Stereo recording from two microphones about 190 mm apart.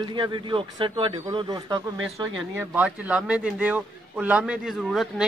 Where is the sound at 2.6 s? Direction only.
5° right (ahead or behind).